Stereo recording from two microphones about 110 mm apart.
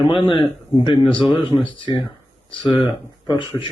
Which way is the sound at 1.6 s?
50° left (ahead or behind).